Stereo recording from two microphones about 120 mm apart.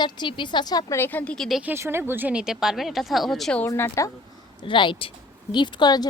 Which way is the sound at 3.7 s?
25° left (ahead or behind).